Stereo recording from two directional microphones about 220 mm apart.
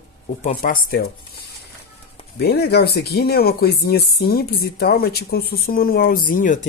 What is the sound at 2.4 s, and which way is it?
Speech, 45° left (ahead or behind).